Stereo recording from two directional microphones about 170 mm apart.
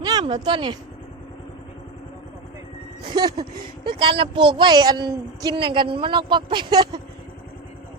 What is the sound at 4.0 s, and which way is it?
Speech, 30° right (ahead or behind).